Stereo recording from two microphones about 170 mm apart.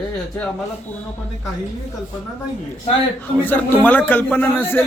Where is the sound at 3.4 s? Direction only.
10° left (ahead or behind).